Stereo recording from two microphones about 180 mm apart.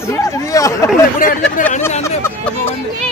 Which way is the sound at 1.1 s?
45° left (ahead or behind).